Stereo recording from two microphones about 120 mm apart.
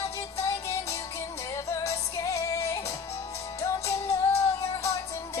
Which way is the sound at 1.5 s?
25° left (ahead or behind).